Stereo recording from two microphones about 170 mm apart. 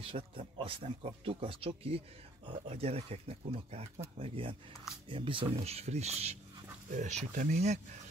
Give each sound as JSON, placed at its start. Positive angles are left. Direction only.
{"t": 0.0, "sound": "speech", "side_deg": -30}